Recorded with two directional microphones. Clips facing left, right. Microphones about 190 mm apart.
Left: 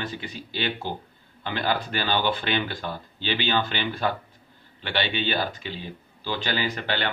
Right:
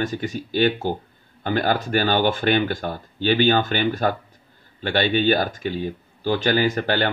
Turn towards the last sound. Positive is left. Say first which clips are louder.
# right 7 dB
turn(degrees=-45)  # may be behind; listen again after turning